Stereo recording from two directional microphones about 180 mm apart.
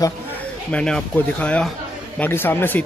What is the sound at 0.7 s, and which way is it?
A man's voice, 5° left (ahead or behind).